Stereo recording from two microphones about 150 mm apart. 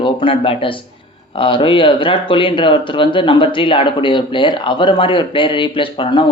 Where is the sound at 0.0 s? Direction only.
35° left (ahead or behind).